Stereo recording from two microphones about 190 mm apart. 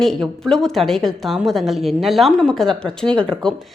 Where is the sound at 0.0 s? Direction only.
Centre (ahead or behind).